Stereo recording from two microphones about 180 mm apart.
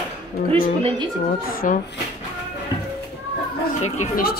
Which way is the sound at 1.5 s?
50° left (ahead or behind).